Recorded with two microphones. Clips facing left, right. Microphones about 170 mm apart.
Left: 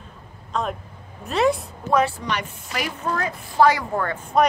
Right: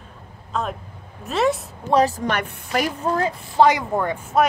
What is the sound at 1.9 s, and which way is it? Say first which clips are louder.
A woman's voice: right 3 dB; 35° right (ahead or behind).